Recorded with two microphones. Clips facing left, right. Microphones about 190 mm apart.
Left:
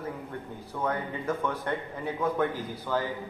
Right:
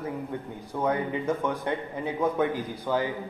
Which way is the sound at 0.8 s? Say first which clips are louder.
Right 4 dB; 15° right (ahead or behind).